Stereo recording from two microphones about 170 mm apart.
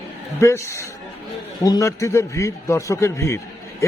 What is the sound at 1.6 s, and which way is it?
A man's voice, 20° left (ahead or behind).